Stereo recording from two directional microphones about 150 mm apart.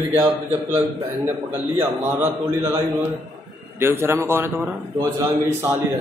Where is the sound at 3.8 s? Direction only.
15° right (ahead or behind).